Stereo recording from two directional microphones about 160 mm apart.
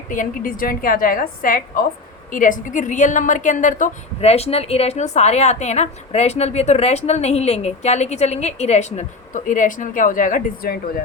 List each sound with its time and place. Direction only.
0.1 s a woman's voice: 60° left (ahead or behind)
4.2 s a woman's voice: 40° left (ahead or behind); by 11.0 s 65° left (ahead or behind)